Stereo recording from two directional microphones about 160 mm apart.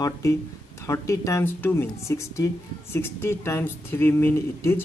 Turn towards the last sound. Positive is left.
turn(degrees=15)  # may be behind; listen again after turning